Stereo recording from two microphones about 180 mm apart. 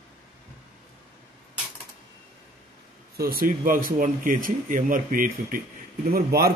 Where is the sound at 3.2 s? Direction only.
55° right (ahead or behind).